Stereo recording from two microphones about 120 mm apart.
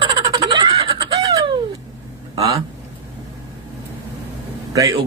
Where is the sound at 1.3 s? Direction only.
35° right (ahead or behind).